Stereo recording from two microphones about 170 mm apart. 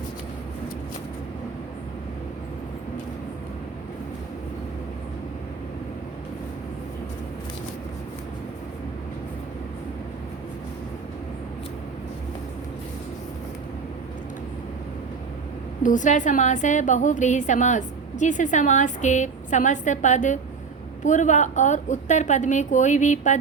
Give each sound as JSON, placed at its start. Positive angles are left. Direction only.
{"t": 15.8, "sound": "a woman's voice", "side_deg": 50}